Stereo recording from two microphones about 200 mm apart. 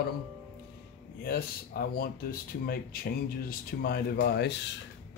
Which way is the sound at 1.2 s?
50° left (ahead or behind).